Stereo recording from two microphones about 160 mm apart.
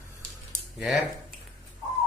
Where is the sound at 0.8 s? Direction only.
10° right (ahead or behind).